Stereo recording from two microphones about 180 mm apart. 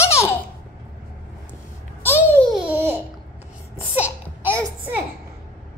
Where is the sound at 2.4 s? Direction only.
Centre (ahead or behind).